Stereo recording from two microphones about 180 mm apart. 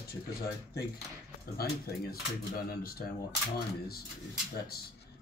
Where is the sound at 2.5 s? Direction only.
55° left (ahead or behind).